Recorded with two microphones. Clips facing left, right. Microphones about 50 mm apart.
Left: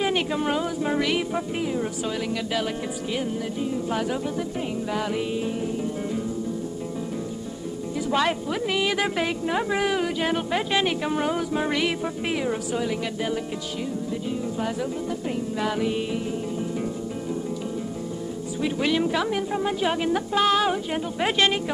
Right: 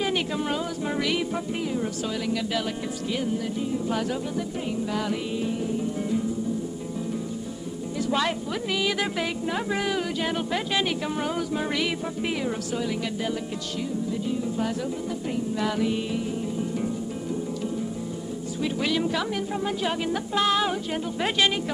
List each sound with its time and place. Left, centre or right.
0.0 s speech: centre
4.9 s speech: centre
8.1 s speech: centre
14.6 s music: centre
18.6 s speech: centre